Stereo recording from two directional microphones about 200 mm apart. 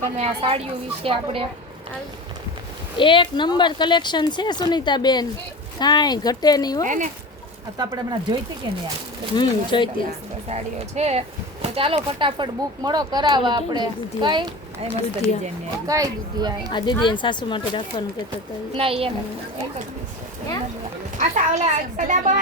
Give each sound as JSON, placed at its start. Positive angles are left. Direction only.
{"t": 0.2, "sound": "speech", "side_deg": -30}
{"t": 3.0, "sound": "speech", "side_deg": 25}
{"t": 6.8, "sound": "a woman's voice", "side_deg": -40}
{"t": 7.8, "sound": "speech", "side_deg": -20}
{"t": 9.3, "sound": "speech", "side_deg": 25}
{"t": 10.5, "sound": "a woman's voice", "side_deg": -35}
{"t": 16.7, "sound": "speech", "side_deg": 20}
{"t": 18.7, "sound": "speech", "side_deg": -25}
{"t": 21.2, "sound": "a woman's voice", "side_deg": -35}